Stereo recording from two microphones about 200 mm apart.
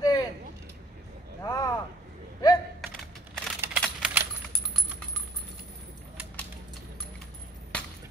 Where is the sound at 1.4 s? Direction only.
15° left (ahead or behind).